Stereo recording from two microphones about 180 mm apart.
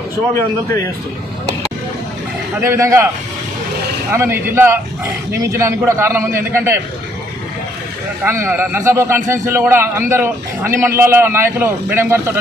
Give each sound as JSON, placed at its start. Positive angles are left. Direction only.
{"t": 2.6, "sound": "a man's voice", "side_deg": -15}
{"t": 4.1, "sound": "a man's voice", "side_deg": -15}
{"t": 8.2, "sound": "a man's voice", "side_deg": -10}